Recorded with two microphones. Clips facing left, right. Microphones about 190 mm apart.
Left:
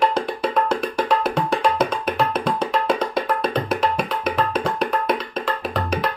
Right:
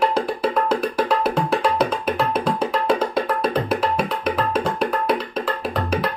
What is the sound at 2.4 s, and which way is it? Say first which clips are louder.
Wood block: right 1 dB; 5° right (ahead or behind).